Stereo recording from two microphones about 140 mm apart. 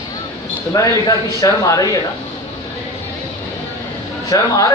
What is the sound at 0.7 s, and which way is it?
A man's voice, 25° left (ahead or behind).